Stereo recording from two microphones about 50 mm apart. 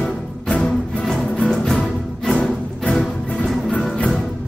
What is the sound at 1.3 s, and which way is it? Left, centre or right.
Music, centre.